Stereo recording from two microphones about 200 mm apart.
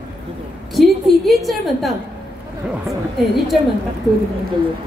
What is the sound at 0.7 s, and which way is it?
A woman's voice, centre (ahead or behind).